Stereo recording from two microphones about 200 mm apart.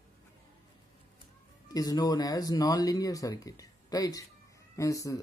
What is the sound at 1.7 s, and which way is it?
Speech, 20° left (ahead or behind).